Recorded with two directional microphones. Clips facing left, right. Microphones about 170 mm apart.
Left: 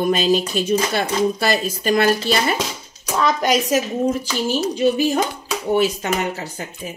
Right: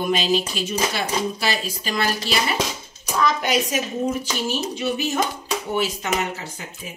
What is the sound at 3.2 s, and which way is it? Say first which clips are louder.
A woman's voice: left 3 dB; 40° left (ahead or behind).